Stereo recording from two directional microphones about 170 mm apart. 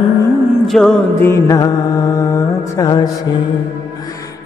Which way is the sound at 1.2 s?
20° left (ahead or behind).